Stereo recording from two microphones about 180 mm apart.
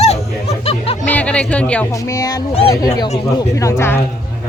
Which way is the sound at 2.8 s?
20° left (ahead or behind).